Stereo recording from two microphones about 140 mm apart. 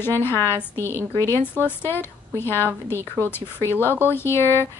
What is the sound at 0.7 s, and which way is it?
Speech, 20° right (ahead or behind).